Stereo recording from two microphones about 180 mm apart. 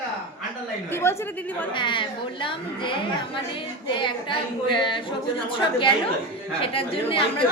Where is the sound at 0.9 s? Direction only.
15° left (ahead or behind).